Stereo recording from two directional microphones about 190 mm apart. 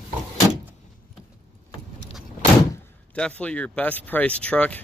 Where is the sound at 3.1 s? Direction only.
5° left (ahead or behind).